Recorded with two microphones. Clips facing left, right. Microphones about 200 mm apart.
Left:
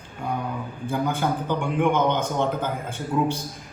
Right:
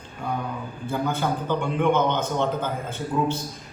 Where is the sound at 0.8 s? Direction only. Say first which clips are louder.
Left 1 dB; 15° left (ahead or behind).